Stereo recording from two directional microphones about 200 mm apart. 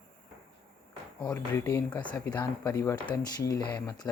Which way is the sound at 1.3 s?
15° left (ahead or behind).